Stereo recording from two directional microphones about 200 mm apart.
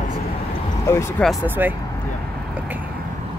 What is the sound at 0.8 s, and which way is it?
Speech, 15° left (ahead or behind).